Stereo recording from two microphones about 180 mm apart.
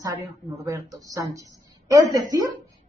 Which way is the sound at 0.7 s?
20° right (ahead or behind).